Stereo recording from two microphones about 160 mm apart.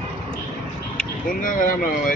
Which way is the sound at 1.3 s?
60° left (ahead or behind).